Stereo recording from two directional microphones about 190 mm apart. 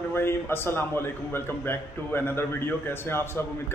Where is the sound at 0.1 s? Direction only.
10° left (ahead or behind).